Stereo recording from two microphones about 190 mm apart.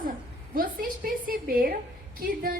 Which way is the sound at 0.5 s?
50° right (ahead or behind).